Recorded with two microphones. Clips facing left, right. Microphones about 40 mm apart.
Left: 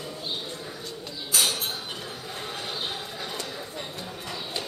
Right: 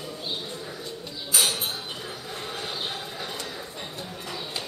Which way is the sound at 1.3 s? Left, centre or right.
Centre.